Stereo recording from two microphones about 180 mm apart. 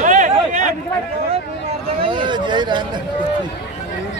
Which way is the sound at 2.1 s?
25° right (ahead or behind).